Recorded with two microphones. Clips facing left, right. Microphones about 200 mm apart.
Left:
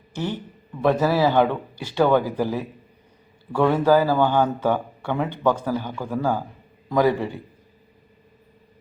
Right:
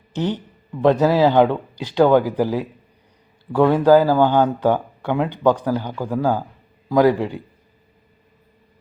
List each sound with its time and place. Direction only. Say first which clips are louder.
0.1 s speech: right 5 dB; 20° right (ahead or behind)